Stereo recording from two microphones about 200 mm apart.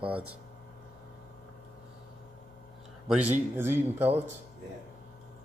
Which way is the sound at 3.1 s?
10° right (ahead or behind).